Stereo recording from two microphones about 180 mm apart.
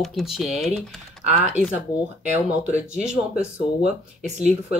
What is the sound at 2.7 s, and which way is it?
Speech, 5° right (ahead or behind).